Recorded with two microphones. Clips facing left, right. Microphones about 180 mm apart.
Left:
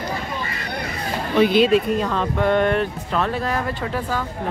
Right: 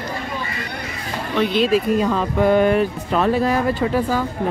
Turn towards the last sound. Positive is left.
turn(degrees=-5)  # may be behind; listen again after turning